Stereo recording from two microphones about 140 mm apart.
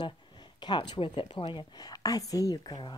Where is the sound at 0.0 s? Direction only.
30° left (ahead or behind).